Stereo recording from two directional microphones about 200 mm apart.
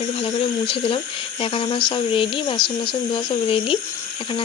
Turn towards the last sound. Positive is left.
turn(degrees=25)  # may be behind; listen again after turning